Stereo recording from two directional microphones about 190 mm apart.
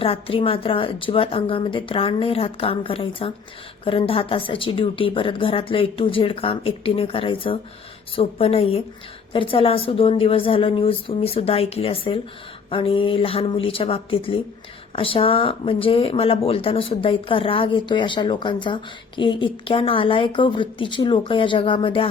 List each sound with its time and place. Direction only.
0.0 s a woman's voice: 30° left (ahead or behind)